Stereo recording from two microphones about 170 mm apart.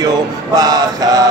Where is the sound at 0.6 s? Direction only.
20° right (ahead or behind).